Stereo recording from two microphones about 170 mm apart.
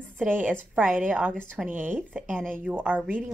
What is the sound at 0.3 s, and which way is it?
Speech, 10° right (ahead or behind).